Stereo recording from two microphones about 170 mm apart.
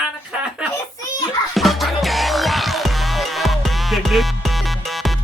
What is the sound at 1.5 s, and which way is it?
Music, centre (ahead or behind).